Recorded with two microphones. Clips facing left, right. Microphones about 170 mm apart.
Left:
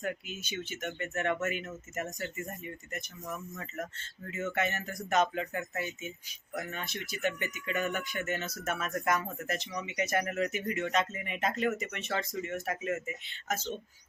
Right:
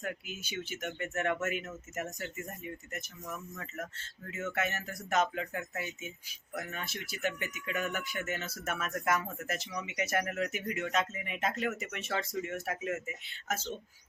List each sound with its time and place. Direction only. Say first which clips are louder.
0.0 s speech: left 3 dB; 10° right (ahead or behind)